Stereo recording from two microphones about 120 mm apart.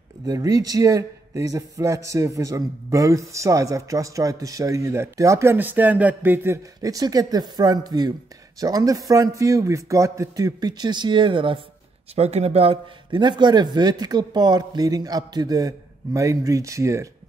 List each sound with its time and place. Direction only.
0.3 s a man's voice: 30° right (ahead or behind)
6.8 s a man's voice: 30° right (ahead or behind)
12.2 s speech: 65° right (ahead or behind)
13.2 s speech: 40° right (ahead or behind)